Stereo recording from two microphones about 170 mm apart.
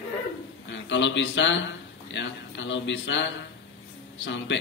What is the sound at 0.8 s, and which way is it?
A man's voice, 90° left.